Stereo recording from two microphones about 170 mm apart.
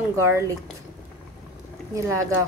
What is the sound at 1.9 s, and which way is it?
Speech, 20° right (ahead or behind).